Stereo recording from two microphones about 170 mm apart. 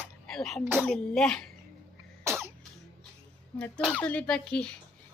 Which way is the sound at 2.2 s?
15° right (ahead or behind).